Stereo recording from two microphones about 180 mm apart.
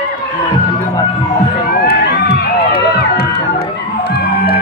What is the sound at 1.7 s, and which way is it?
Run, 60° left (ahead or behind).